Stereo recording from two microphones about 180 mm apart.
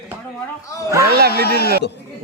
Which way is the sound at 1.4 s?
60° left (ahead or behind).